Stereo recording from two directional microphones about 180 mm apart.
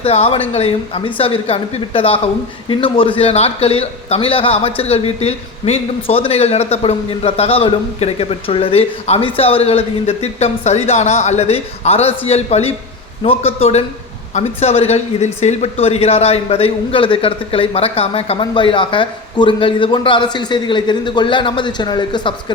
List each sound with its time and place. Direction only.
0.0 s speech: 35° left (ahead or behind)